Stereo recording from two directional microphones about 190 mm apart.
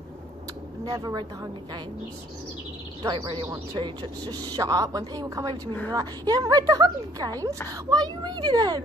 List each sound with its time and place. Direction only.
0.8 s speech: 20° right (ahead or behind)
3.0 s speech: 25° right (ahead or behind)